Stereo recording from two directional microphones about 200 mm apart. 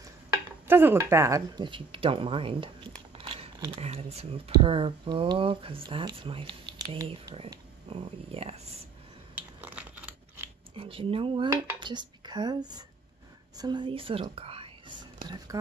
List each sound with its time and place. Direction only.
0.3 s speech: 10° right (ahead or behind)
3.2 s crumpling: 25° right (ahead or behind)
3.8 s speech: 30° right (ahead or behind)
9.3 s biting: 10° right (ahead or behind)
10.7 s speech: 25° right (ahead or behind)
11.4 s dishes: 20° right (ahead or behind)
13.6 s speech: 20° right (ahead or behind)